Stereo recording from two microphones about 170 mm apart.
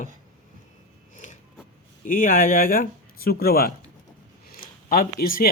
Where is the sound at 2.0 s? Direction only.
55° left (ahead or behind).